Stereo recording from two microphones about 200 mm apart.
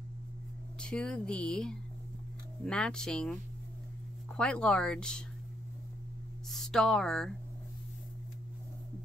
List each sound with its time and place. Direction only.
0.7 s speech: 5° left (ahead or behind)
6.5 s speech: centre (ahead or behind)